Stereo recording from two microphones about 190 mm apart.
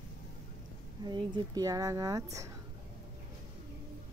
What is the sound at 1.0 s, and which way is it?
A woman's voice, 25° right (ahead or behind).